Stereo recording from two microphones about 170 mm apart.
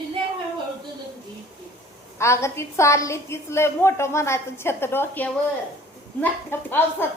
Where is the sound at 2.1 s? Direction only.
15° left (ahead or behind).